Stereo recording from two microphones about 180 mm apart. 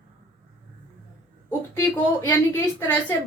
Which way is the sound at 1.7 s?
15° left (ahead or behind).